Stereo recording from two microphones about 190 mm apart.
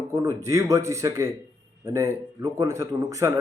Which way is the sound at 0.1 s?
15° right (ahead or behind).